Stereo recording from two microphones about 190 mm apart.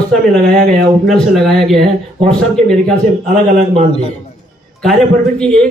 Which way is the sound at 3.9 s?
35° left (ahead or behind).